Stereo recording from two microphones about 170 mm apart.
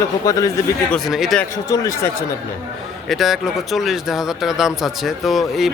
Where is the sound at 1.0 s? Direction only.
Centre (ahead or behind).